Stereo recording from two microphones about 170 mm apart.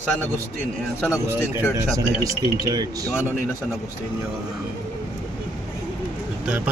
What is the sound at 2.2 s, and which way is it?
Speech, 25° right (ahead or behind).